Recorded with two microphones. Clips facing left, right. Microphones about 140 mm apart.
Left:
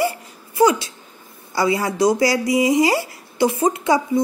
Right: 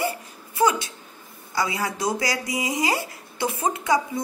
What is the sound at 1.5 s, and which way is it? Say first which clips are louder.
Speech: left 7 dB; 35° left (ahead or behind).